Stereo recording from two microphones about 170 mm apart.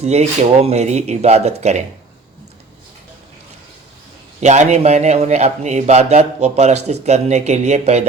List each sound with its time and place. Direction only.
0.0 s a man's voice: 40° right (ahead or behind)
4.4 s a man's voice: 45° right (ahead or behind)